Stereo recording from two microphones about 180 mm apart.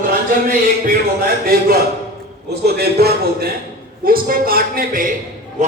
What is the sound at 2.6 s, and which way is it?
A woman's voice, 60° right (ahead or behind).